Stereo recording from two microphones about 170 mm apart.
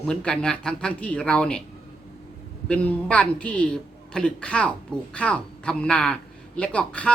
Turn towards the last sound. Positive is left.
turn(degrees=5)  # may be behind; listen again after turning